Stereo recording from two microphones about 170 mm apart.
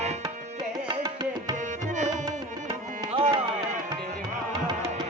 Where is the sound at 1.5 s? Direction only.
45° right (ahead or behind).